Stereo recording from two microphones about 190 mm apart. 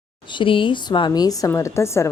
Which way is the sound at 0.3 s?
25° left (ahead or behind).